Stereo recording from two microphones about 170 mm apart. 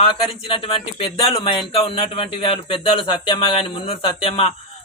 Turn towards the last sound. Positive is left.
turn(degrees=30)  # may be behind; listen again after turning